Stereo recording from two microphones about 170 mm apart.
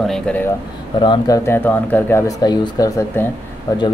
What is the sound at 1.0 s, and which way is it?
Speech, 30° left (ahead or behind).